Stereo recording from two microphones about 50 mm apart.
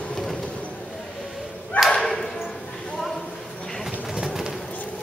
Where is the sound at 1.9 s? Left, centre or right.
Centre.